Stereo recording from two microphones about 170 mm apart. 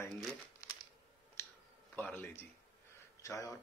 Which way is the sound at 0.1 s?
5° left (ahead or behind).